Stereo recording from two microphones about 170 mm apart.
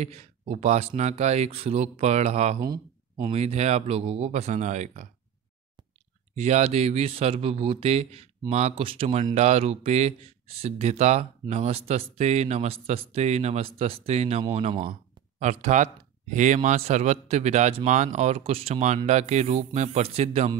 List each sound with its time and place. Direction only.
0.0 s speech: 40° right (ahead or behind)
6.3 s speech: 40° right (ahead or behind)